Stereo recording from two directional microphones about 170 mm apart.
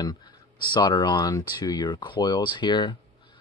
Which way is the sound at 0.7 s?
25° left (ahead or behind).